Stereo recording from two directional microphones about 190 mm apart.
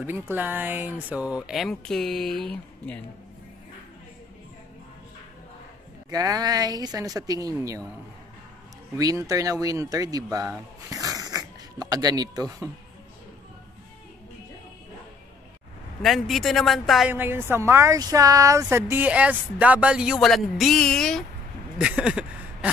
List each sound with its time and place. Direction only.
0.0 s speech: 10° right (ahead or behind)
6.0 s speech: 20° right (ahead or behind)
8.9 s speech: 20° right (ahead or behind)
10.9 s music: 20° right (ahead or behind)
16.0 s speech: centre (ahead or behind)
17.1 s speech: 10° right (ahead or behind)
21.7 s a sound: 5° right (ahead or behind)